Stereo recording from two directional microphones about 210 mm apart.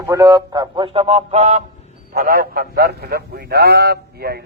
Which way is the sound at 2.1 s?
45° right (ahead or behind).